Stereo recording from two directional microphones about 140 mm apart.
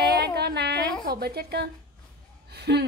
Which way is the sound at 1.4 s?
90° right.